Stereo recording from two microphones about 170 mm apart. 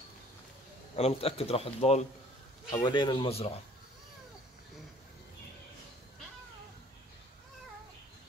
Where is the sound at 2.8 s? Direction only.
25° left (ahead or behind).